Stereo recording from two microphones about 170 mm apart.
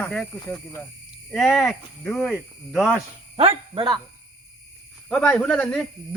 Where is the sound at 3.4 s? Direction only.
30° right (ahead or behind).